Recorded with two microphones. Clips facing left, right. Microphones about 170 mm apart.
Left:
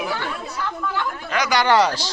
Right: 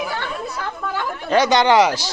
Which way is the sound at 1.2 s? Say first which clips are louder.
Right 5 dB; 30° right (ahead or behind).